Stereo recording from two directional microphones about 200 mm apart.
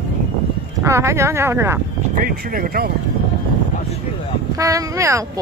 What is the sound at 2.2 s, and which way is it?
Speech, 45° right (ahead or behind).